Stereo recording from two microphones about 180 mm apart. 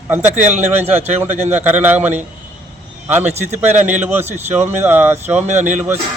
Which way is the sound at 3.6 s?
10° right (ahead or behind).